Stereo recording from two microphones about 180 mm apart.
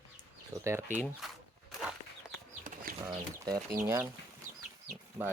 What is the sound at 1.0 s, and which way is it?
Speech, centre (ahead or behind).